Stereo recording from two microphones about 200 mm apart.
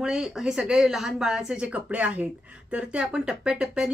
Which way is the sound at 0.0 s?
5° right (ahead or behind).